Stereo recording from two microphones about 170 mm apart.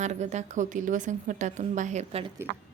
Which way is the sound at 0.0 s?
45° right (ahead or behind).